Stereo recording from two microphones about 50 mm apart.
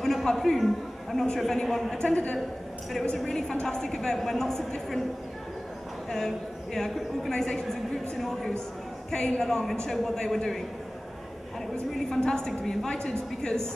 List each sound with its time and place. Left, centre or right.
0.0 s a woman's voice: centre
2.0 s a woman's voice: left
2.9 s a woman's voice: centre
6.0 s a man's voice: centre
11.9 s a woman's voice: centre